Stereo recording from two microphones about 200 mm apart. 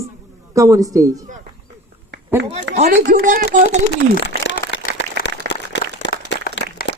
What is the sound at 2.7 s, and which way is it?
Speech, 35° right (ahead or behind).